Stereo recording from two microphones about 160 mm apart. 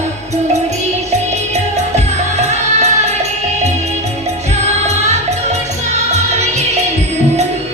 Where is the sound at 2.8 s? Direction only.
45° right (ahead or behind).